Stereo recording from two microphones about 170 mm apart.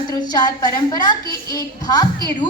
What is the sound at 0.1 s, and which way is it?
A woman's voice, 25° left (ahead or behind).